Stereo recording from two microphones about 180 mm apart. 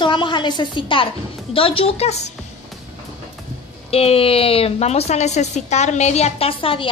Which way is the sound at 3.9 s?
35° left (ahead or behind).